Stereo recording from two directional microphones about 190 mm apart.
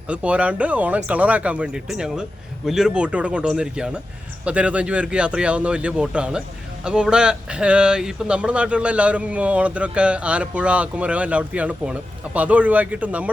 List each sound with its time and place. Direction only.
0.1 s a man's voice: 5° right (ahead or behind)